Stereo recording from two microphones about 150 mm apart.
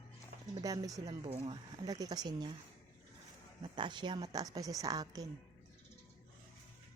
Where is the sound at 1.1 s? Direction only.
40° right (ahead or behind).